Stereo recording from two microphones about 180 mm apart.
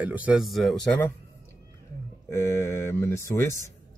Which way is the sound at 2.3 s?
15° left (ahead or behind).